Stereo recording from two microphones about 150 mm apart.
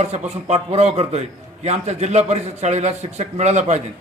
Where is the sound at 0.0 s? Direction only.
50° right (ahead or behind).